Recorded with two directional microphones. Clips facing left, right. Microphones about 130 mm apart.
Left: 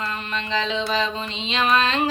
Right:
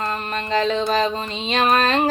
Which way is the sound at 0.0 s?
45° right (ahead or behind).